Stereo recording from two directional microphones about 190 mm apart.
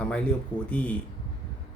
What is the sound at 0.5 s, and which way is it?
Speech, 25° left (ahead or behind).